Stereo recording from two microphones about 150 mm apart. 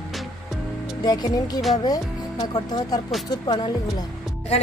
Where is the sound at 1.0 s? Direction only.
25° left (ahead or behind).